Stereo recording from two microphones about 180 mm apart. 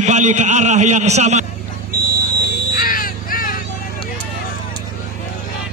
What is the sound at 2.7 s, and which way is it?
Crow, 50° left (ahead or behind).